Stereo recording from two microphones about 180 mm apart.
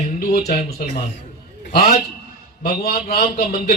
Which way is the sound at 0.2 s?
60° left (ahead or behind).